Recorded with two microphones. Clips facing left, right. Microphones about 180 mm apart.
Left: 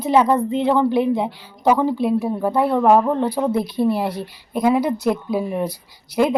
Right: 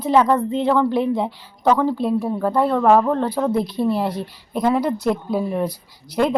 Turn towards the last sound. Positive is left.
turn(degrees=5)  # may be behind; listen again after turning